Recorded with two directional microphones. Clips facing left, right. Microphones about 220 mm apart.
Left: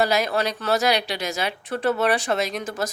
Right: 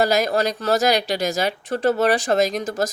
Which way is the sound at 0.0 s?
45° right (ahead or behind).